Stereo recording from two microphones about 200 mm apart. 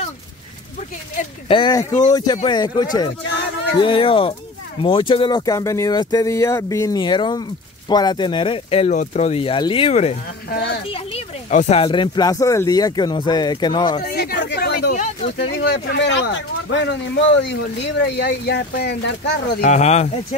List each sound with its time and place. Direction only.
1.5 s speech: 20° left (ahead or behind)
1.9 s speech: 35° left (ahead or behind)
2.1 s speech: 20° left (ahead or behind)
10.5 s a child's voice: 50° left (ahead or behind)
10.9 s speech: 30° left (ahead or behind)
14.1 s a sound: 50° left (ahead or behind)
15.5 s speech: 55° left (ahead or behind)
19.6 s speech: 35° left (ahead or behind)